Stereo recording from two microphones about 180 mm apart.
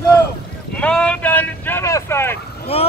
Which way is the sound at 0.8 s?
5° left (ahead or behind).